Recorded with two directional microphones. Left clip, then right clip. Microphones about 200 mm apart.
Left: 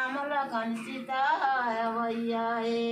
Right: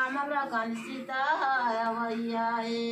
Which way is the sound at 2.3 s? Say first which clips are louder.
Even; 15° left (ahead or behind).